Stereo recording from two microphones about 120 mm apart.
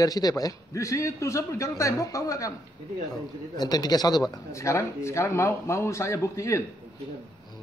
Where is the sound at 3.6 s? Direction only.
35° left (ahead or behind).